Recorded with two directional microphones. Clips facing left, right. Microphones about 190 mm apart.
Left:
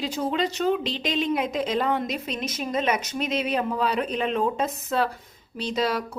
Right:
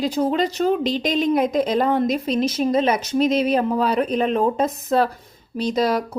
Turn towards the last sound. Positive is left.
turn(degrees=-40)  # may be behind; listen again after turning